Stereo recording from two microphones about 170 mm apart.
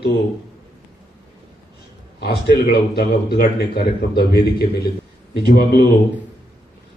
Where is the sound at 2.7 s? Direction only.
65° left (ahead or behind).